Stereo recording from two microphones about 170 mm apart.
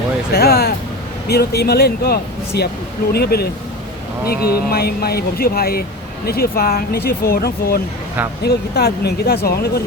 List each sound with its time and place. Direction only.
0.3 s speech: 65° left (ahead or behind)